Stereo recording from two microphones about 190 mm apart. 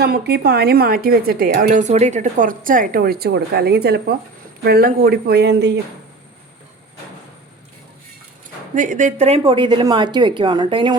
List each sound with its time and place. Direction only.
0.0 s a woman's voice: 55° right (ahead or behind)
8.7 s a woman's voice: 40° right (ahead or behind); by 10.9 s 25° right (ahead or behind)